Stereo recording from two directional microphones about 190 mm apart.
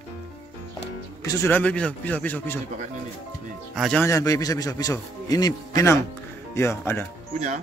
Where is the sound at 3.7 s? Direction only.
Centre (ahead or behind).